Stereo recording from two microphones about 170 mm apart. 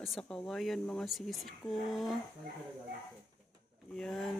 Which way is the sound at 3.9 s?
5° left (ahead or behind).